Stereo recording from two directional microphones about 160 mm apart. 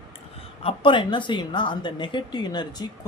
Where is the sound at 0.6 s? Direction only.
30° left (ahead or behind).